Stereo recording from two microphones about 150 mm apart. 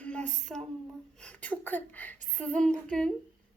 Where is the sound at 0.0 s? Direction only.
5° left (ahead or behind).